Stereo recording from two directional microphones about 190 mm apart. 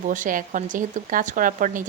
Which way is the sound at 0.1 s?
45° right (ahead or behind).